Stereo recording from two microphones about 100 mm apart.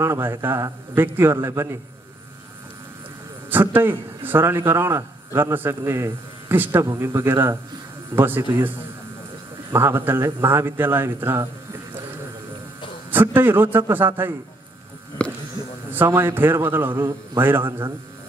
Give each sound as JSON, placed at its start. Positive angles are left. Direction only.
{"t": 0.0, "sound": "a man's voice", "side_deg": -25}
{"t": 3.4, "sound": "a man's voice", "side_deg": -20}
{"t": 13.1, "sound": "a man's voice", "side_deg": -20}
{"t": 15.2, "sound": "a sound", "side_deg": 10}
{"t": 16.1, "sound": "a man's voice", "side_deg": -25}